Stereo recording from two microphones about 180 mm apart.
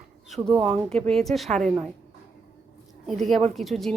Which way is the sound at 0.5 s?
35° right (ahead or behind).